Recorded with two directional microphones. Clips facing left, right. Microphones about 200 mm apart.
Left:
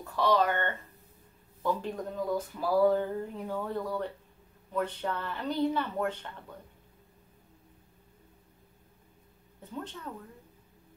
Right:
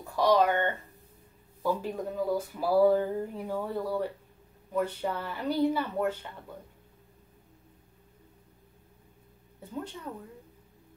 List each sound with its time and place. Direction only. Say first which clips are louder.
0.0 s speech: right 3 dB; 15° right (ahead or behind)
9.6 s speech: right 2 dB; 10° right (ahead or behind)